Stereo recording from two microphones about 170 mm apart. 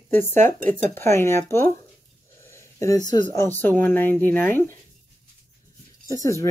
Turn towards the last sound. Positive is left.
turn(degrees=20)  # may be behind; listen again after turning